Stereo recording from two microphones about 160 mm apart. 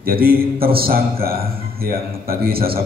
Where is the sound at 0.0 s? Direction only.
70° right (ahead or behind).